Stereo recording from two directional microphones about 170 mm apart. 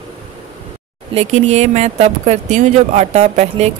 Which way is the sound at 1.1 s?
40° right (ahead or behind).